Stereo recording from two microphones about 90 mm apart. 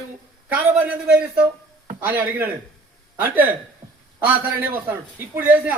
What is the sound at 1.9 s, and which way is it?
A man's voice, 20° right (ahead or behind).